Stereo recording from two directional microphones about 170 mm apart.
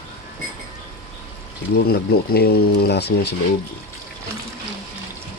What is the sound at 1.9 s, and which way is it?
Speech, 70° left (ahead or behind).